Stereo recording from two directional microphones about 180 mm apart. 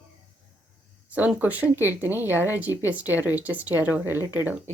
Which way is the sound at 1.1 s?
10° right (ahead or behind).